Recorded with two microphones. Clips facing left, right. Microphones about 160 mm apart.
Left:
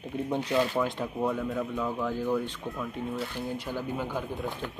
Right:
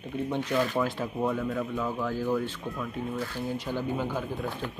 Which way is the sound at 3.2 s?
10° left (ahead or behind).